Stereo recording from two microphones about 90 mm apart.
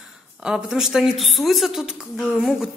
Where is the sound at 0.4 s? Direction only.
10° right (ahead or behind).